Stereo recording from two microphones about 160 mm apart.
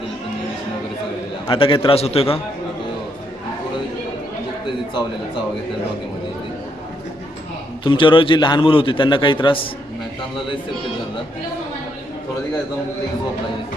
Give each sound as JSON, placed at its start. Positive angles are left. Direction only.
{"t": 1.5, "sound": "a man's voice", "side_deg": 35}
{"t": 7.9, "sound": "a man's voice", "side_deg": 30}